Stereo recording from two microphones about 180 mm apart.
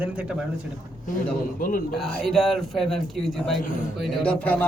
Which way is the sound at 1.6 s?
50° left (ahead or behind).